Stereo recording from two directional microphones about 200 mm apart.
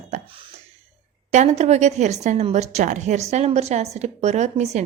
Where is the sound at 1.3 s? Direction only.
35° right (ahead or behind).